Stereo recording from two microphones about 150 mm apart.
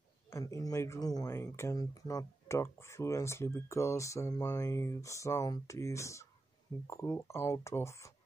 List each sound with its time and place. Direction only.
0.3 s speech: 20° left (ahead or behind)